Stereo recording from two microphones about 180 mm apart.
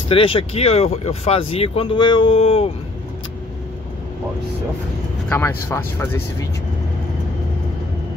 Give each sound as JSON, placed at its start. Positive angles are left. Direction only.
{"t": 0.1, "sound": "speech", "side_deg": 30}
{"t": 5.3, "sound": "speech", "side_deg": 10}